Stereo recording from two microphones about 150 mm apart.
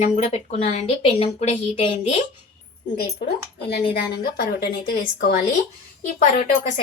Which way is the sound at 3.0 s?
90° left.